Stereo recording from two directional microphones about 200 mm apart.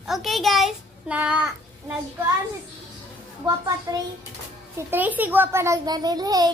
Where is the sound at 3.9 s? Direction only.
15° right (ahead or behind).